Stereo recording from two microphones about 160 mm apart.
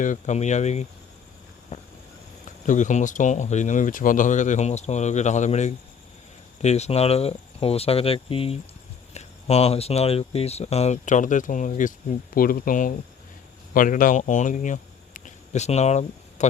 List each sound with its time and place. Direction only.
0.0 s speech: 50° left (ahead or behind)
1.7 s vehicle: 45° left (ahead or behind)
2.4 s speech: 50° left (ahead or behind)